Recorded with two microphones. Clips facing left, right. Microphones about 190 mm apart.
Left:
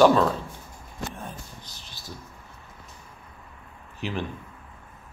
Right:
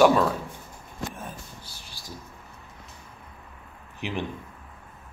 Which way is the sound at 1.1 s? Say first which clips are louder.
Even; 5° right (ahead or behind).